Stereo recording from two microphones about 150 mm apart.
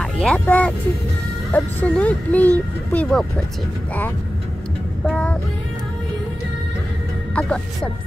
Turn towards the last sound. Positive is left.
turn(degrees=5)  # may be behind; listen again after turning